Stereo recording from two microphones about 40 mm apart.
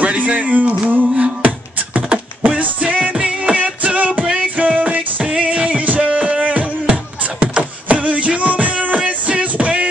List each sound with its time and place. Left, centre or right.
0.0 s music: right
8.0 s music: right